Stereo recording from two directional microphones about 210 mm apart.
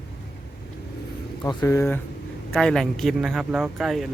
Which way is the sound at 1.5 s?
15° left (ahead or behind).